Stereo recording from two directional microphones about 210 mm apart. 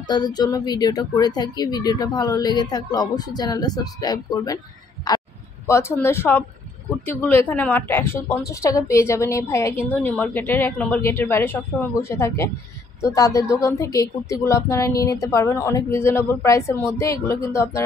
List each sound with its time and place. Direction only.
0.0 s a woman's voice: 20° left (ahead or behind)
5.1 s a sound: 20° left (ahead or behind)
5.7 s speech: 10° left (ahead or behind)